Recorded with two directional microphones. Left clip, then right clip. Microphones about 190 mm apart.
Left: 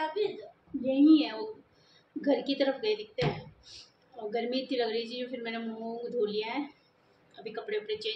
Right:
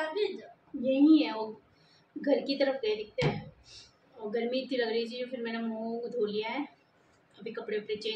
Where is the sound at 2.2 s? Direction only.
15° left (ahead or behind).